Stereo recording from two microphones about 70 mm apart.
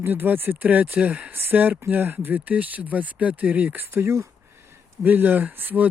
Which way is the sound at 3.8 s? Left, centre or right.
Right.